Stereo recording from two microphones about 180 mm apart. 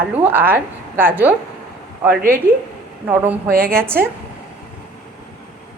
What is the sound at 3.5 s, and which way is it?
Speech, 55° right (ahead or behind).